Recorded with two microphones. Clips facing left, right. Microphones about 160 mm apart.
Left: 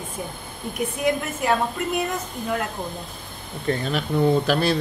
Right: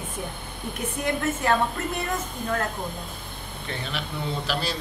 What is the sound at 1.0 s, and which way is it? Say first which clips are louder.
A woman's voice: left 1 dB; 10° left (ahead or behind).